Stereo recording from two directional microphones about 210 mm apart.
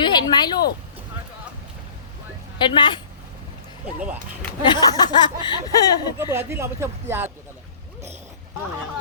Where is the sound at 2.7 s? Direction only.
20° left (ahead or behind).